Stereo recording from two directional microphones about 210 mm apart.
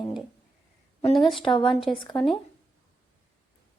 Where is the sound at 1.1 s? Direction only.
Centre (ahead or behind).